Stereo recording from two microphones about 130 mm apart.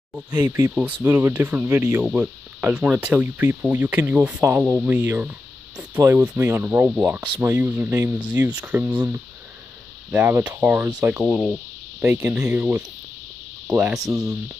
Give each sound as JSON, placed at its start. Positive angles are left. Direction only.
{"t": 0.1, "sound": "speech", "side_deg": -15}
{"t": 11.2, "sound": "speech", "side_deg": -5}
{"t": 12.0, "sound": "speech", "side_deg": -15}